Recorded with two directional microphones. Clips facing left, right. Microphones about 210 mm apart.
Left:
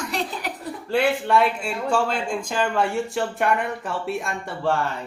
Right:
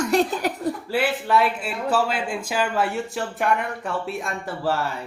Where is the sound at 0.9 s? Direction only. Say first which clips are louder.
Left 4 dB; 5° right (ahead or behind).